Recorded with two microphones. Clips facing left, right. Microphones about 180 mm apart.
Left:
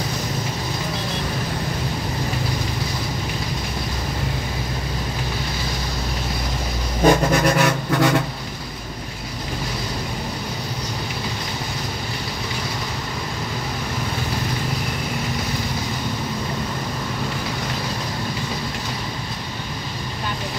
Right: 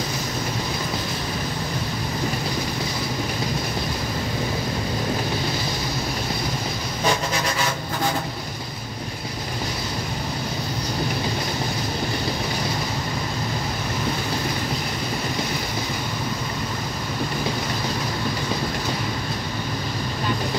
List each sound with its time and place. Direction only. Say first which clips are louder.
7.1 s vehicle: left 8 dB; 60° left (ahead or behind); by 8.2 s 75° left (ahead or behind)